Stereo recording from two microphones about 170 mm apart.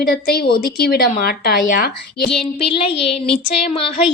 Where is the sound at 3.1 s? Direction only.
5° left (ahead or behind).